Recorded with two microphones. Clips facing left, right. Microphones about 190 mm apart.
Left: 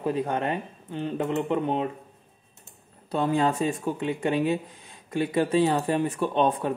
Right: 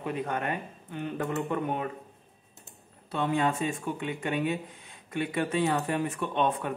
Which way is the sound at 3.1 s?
35° left (ahead or behind).